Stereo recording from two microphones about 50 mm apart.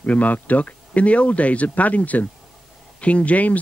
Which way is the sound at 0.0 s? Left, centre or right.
Left.